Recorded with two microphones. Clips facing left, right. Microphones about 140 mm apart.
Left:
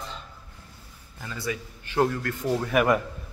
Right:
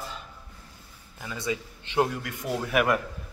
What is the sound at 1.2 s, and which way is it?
A man's voice, 20° right (ahead or behind).